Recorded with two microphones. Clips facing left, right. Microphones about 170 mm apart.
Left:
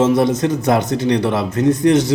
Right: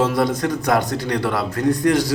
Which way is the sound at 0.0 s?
20° left (ahead or behind).